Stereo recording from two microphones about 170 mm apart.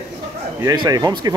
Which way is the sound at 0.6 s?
20° right (ahead or behind).